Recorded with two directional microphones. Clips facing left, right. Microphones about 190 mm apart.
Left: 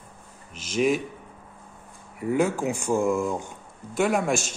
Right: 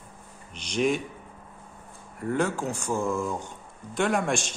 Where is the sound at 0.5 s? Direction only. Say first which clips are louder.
Left 2 dB; 5° left (ahead or behind).